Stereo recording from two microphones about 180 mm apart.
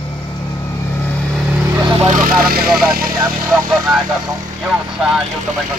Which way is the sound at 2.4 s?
55° right (ahead or behind).